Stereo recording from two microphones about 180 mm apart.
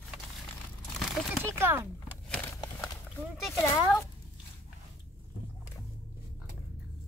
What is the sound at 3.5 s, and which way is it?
Speech, 15° left (ahead or behind).